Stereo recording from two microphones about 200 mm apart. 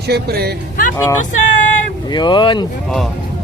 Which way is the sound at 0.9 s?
15° left (ahead or behind).